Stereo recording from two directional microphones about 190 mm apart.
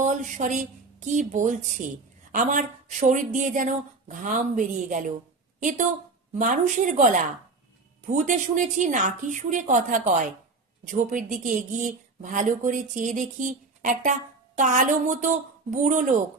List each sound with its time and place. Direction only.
0.0 s a woman's voice: 40° right (ahead or behind)